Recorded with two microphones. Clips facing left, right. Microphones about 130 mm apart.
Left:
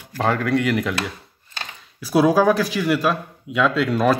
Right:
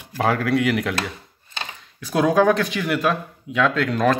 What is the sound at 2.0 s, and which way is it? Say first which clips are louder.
Speech: left 1 dB; 5° left (ahead or behind).